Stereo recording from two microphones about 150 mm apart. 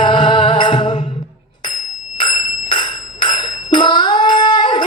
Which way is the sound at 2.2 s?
30° left (ahead or behind).